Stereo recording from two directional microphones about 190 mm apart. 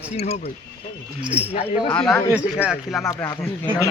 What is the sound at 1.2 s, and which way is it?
Speech, 10° right (ahead or behind).